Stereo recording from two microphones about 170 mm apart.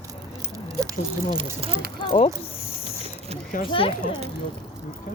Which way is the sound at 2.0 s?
35° left (ahead or behind).